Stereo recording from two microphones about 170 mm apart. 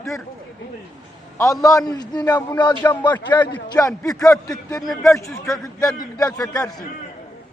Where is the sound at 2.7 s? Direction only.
10° left (ahead or behind).